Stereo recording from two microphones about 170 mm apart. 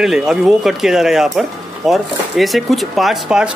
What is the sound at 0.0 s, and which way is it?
Speech, 5° right (ahead or behind).